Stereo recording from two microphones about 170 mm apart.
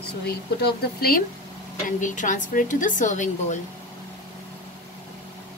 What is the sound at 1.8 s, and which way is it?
A woman's voice, 45° left (ahead or behind).